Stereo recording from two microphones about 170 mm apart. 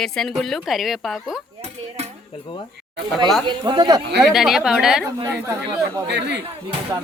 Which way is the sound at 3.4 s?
25° right (ahead or behind).